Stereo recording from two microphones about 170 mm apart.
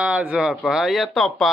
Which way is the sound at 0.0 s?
5° right (ahead or behind).